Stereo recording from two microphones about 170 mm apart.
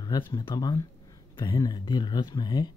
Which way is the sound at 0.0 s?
25° left (ahead or behind).